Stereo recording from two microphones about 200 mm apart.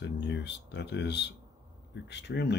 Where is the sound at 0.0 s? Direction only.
60° left (ahead or behind).